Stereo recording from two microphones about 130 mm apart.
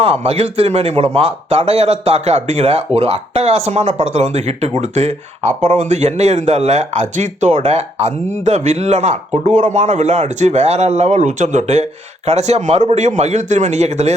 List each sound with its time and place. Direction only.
0.0 s speech: 50° right (ahead or behind)